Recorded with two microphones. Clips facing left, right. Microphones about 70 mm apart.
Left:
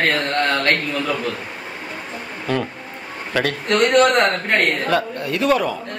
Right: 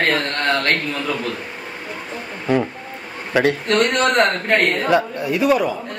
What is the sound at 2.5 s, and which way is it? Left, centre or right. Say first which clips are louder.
A man's voice: right 4 dB; centre.